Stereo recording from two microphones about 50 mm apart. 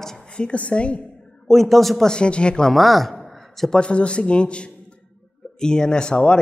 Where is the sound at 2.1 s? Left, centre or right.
Left.